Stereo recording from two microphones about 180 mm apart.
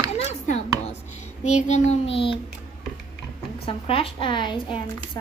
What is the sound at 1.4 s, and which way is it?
Child singing, 40° left (ahead or behind).